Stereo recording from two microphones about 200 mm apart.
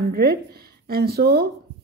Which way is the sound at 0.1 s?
50° right (ahead or behind).